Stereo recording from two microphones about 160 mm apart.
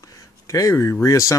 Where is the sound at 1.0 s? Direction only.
20° left (ahead or behind).